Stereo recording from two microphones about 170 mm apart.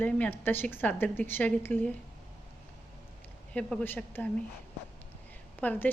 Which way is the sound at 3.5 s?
10° left (ahead or behind).